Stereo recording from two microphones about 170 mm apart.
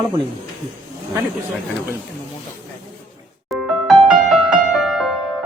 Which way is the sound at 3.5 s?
Centre (ahead or behind).